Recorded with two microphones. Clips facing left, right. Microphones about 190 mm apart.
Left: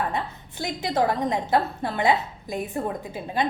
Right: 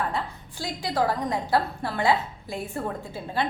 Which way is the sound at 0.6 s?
20° left (ahead or behind).